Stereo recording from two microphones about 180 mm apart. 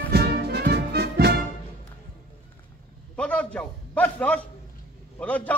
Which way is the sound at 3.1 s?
5° left (ahead or behind).